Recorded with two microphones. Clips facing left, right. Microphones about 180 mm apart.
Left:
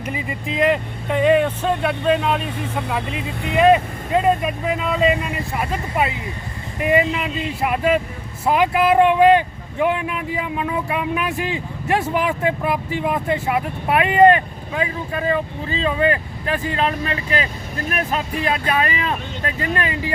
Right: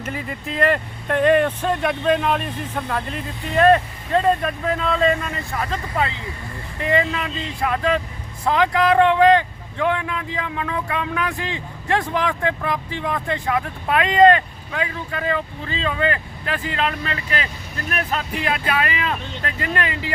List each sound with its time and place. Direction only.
0.0 s speech: 5° left (ahead or behind); by 17.3 s 30° left (ahead or behind)
18.3 s speech: 35° left (ahead or behind)
19.7 s speech: 15° left (ahead or behind)